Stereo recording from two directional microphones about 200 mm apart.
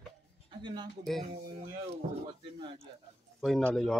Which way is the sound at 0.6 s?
25° right (ahead or behind).